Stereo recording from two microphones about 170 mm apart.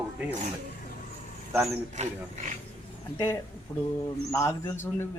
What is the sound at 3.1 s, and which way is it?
Speech, 15° left (ahead or behind).